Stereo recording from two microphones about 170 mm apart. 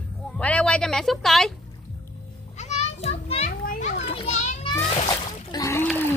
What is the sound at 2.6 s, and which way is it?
Children playing, 40° left (ahead or behind).